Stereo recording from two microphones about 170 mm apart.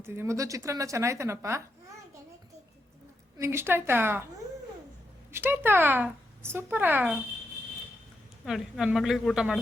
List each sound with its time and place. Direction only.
0.0 s speech: 15° right (ahead or behind)
3.3 s speech: 15° right (ahead or behind)
5.3 s speech: 10° right (ahead or behind)
8.4 s speech: centre (ahead or behind)